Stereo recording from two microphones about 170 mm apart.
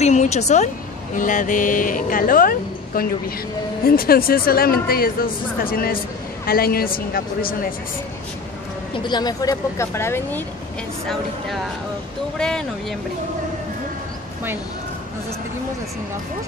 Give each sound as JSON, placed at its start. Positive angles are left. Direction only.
{"t": 0.0, "sound": "a woman's voice", "side_deg": 45}
{"t": 8.9, "sound": "speech", "side_deg": 25}
{"t": 12.4, "sound": "speech", "side_deg": 5}